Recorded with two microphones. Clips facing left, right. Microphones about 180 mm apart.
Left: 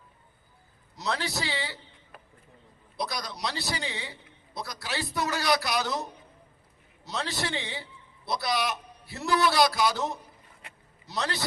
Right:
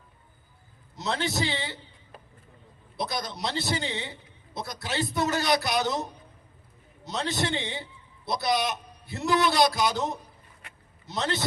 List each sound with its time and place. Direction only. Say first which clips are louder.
0.9 s a man's voice: right 3 dB; 20° right (ahead or behind)
3.0 s a man's voice: right 2 dB; 25° right (ahead or behind)